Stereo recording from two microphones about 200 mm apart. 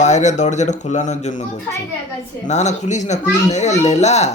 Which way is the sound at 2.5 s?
35° left (ahead or behind).